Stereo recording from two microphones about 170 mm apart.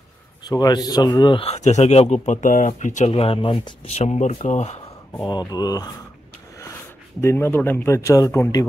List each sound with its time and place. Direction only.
0.4 s a man's voice: 25° left (ahead or behind); by 4.7 s 40° left (ahead or behind)
5.1 s speech: 25° left (ahead or behind)
7.2 s a man's voice: 15° left (ahead or behind)